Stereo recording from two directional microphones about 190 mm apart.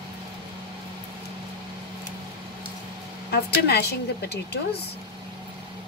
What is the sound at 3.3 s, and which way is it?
A woman's voice, 60° left (ahead or behind).